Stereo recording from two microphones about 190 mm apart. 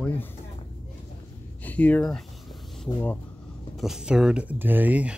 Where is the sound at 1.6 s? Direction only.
10° left (ahead or behind).